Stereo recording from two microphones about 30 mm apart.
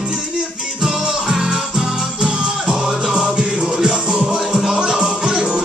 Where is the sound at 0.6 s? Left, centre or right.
Centre.